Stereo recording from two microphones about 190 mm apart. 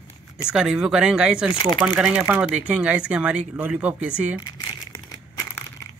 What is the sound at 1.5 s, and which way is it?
Speech, 25° left (ahead or behind).